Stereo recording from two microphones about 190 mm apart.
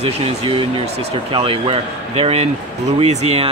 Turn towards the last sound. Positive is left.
turn(degrees=-35)  # may be behind; listen again after turning